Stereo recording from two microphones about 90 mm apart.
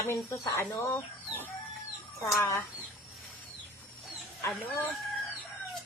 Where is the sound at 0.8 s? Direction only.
20° left (ahead or behind).